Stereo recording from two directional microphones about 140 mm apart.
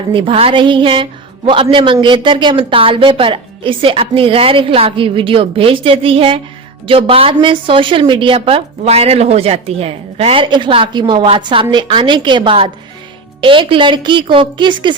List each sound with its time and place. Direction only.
0.1 s a woman's voice: 40° right (ahead or behind)